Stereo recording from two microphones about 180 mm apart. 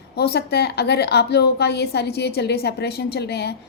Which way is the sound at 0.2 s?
65° left (ahead or behind).